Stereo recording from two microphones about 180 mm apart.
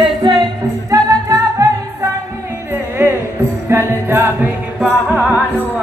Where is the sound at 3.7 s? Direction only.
15° right (ahead or behind).